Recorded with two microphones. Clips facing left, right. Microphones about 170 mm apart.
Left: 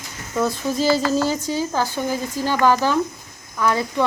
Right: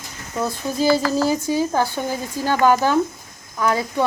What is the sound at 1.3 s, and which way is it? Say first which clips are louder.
Speech: right 3 dB; 15° right (ahead or behind).